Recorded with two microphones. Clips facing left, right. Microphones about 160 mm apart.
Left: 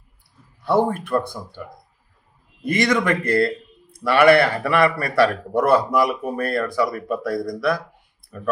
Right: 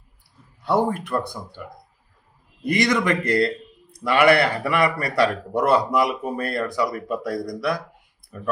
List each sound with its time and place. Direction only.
0.6 s a man's voice: 20° right (ahead or behind)
2.7 s a man's voice: 20° right (ahead or behind)